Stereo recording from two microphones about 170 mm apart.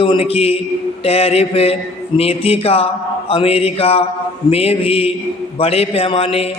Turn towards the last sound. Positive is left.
turn(degrees=35)  # may be behind; listen again after turning